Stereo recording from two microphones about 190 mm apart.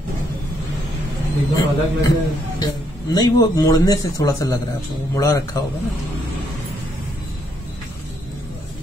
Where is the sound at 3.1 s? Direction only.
20° left (ahead or behind).